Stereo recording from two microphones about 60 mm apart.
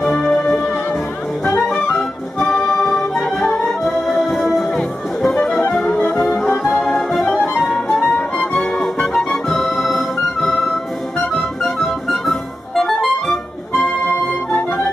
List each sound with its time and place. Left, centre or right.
0.2 s music: centre
2.3 s music: centre
6.7 s music: centre
8.0 s music: centre
8.8 s music: centre